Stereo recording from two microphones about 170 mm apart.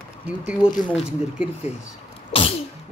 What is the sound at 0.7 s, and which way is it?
Speech, centre (ahead or behind).